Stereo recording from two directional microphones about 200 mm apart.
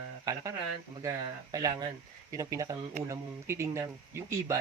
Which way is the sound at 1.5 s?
20° right (ahead or behind).